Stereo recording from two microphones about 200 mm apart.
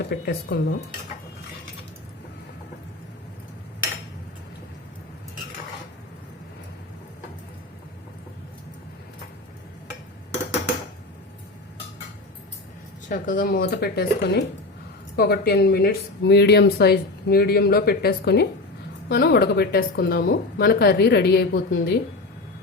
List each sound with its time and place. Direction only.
0.0 s speech: 55° left (ahead or behind)
13.1 s speech: 45° left (ahead or behind)